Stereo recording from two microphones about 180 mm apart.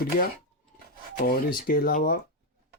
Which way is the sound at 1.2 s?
55° left (ahead or behind).